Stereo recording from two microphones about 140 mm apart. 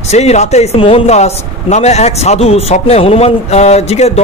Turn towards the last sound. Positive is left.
turn(degrees=50)  # may be behind; listen again after turning